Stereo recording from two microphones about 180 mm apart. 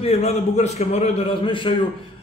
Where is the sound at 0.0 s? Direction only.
35° left (ahead or behind).